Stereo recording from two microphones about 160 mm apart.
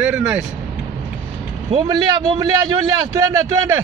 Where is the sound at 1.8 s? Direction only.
25° right (ahead or behind).